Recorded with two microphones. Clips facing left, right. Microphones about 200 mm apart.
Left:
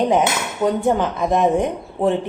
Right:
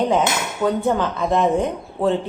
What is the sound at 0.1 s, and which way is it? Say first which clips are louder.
Speech: left 1 dB; 15° left (ahead or behind).